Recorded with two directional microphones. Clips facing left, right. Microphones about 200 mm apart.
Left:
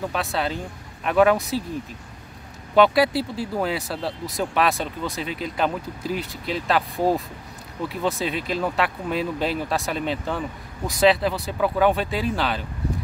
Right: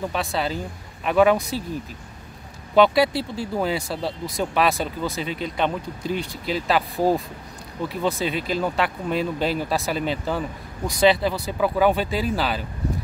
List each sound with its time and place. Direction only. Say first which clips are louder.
0.1 s speech: even; centre (ahead or behind)
2.7 s speech: even; centre (ahead or behind)